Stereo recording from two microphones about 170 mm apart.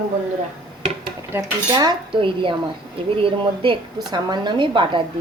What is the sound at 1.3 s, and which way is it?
A woman's voice, 20° right (ahead or behind).